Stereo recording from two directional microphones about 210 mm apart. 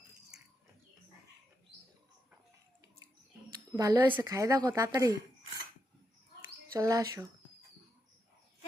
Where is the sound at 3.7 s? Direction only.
15° right (ahead or behind).